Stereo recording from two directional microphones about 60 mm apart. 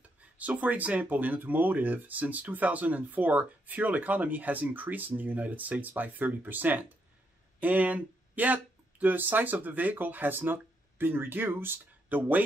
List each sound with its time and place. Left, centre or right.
0.4 s speech: right